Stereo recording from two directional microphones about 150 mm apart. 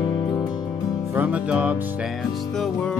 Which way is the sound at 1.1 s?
10° right (ahead or behind).